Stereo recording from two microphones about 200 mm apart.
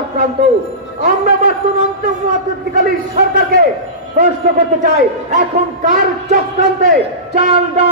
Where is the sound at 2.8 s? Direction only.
45° right (ahead or behind).